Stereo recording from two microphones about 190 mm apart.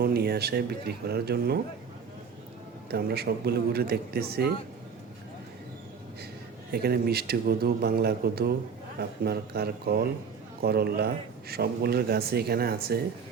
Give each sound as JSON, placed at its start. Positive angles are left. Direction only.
{"t": 0.0, "sound": "a man's voice", "side_deg": -55}
{"t": 2.9, "sound": "a man's voice", "side_deg": -55}
{"t": 6.7, "sound": "a man's voice", "side_deg": -55}